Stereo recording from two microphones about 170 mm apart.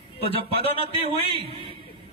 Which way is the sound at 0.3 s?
35° right (ahead or behind).